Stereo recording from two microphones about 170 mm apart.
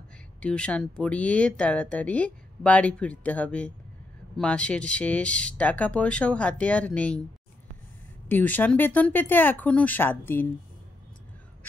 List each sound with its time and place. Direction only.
0.4 s speech: 5° left (ahead or behind)
8.3 s speech: 10° left (ahead or behind)